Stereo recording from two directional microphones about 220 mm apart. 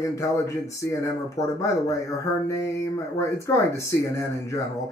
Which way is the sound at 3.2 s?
15° left (ahead or behind).